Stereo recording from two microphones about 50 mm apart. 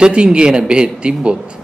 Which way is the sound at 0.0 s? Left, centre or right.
Centre.